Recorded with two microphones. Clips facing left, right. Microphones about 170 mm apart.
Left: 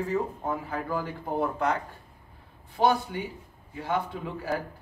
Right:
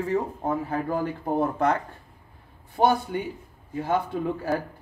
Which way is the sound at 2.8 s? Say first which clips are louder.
Right 2 dB; 50° right (ahead or behind).